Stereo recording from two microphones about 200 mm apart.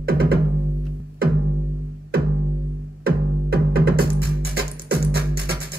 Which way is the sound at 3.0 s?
50° right (ahead or behind).